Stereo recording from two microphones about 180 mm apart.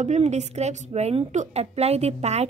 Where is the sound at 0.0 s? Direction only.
40° right (ahead or behind).